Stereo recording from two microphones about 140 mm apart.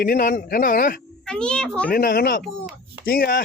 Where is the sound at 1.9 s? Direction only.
90° left.